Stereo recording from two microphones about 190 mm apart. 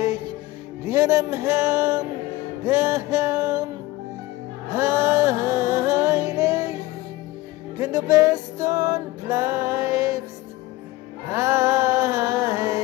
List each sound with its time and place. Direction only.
0.8 s a sound: 15° right (ahead or behind)
4.7 s music: 15° right (ahead or behind)
7.8 s music: 15° right (ahead or behind)
11.3 s music: 15° right (ahead or behind)